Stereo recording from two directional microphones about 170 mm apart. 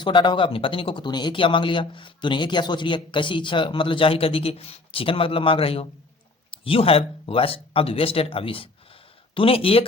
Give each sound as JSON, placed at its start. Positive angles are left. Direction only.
{"t": 0.0, "sound": "speech", "side_deg": 25}